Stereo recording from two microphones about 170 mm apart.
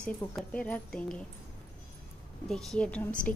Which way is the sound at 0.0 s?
5° left (ahead or behind).